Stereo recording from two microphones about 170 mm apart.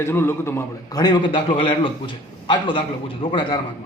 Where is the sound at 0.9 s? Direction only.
25° left (ahead or behind).